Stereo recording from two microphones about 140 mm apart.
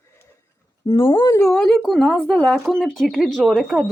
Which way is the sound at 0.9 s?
35° left (ahead or behind).